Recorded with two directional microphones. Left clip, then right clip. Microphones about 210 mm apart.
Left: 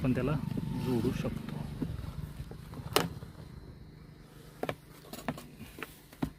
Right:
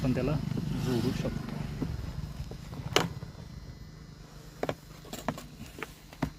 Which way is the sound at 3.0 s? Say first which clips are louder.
Right 2 dB; 10° left (ahead or behind).